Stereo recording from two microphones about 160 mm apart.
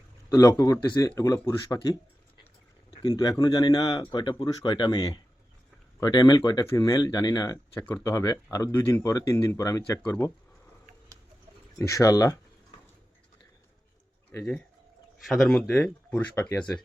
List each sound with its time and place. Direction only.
0.3 s speech: 20° left (ahead or behind)
7.8 s speech: 10° left (ahead or behind)
8.1 s speech: 20° left (ahead or behind)
11.8 s speech: 20° left (ahead or behind)
15.3 s speech: centre (ahead or behind)